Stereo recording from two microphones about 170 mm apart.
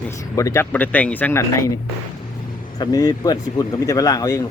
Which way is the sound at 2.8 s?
20° left (ahead or behind).